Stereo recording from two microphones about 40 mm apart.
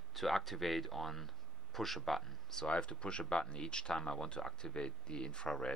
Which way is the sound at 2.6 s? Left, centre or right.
Left.